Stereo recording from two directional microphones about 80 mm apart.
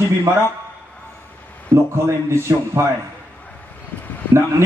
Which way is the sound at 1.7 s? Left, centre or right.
Right.